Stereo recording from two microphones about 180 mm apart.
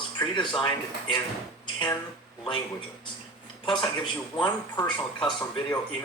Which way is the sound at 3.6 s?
25° left (ahead or behind).